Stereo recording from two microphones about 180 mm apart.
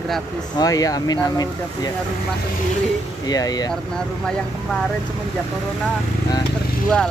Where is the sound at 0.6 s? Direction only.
20° left (ahead or behind).